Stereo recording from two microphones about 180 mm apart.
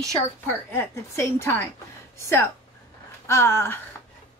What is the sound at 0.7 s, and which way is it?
A woman's voice, 15° left (ahead or behind).